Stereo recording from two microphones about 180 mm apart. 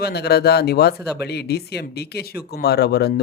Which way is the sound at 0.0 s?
65° left (ahead or behind).